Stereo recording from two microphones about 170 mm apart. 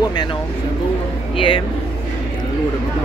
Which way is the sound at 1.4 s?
30° left (ahead or behind).